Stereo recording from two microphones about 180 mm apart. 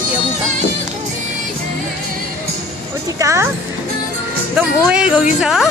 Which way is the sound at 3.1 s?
15° right (ahead or behind).